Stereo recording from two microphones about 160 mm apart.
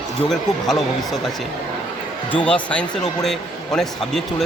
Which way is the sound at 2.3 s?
10° left (ahead or behind).